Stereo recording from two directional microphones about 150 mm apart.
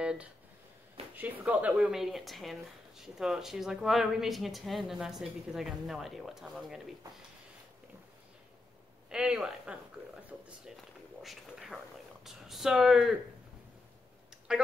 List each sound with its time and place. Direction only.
0.0 s a sound: 5° right (ahead or behind)
1.1 s speech: 10° right (ahead or behind)
9.1 s speech: 5° right (ahead or behind)
11.2 s speech: 5° right (ahead or behind)